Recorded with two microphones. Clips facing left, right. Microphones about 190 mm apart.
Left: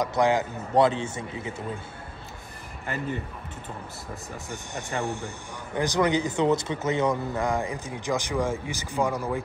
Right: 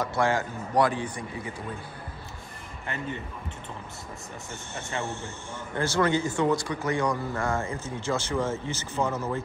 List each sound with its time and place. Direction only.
0.0 s a man's voice: 15° left (ahead or behind)
4.5 s speech: 15° left (ahead or behind)